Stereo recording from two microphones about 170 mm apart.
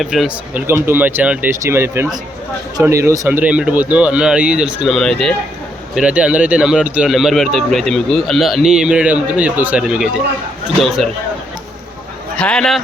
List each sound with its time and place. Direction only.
0.0 s speech: centre (ahead or behind)
0.7 s speech: 10° right (ahead or behind)
12.4 s speech: 5° left (ahead or behind)